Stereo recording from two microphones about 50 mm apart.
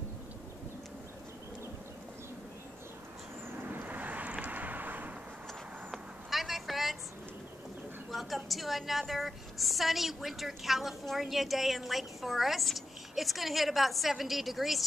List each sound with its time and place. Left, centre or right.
3.5 s vehicle: right
5.9 s a sound: centre
8.1 s a woman's voice: centre